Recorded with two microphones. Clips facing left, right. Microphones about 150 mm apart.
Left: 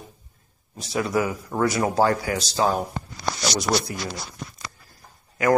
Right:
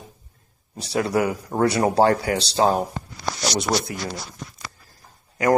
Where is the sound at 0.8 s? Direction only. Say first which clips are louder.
Right 2 dB; 35° right (ahead or behind).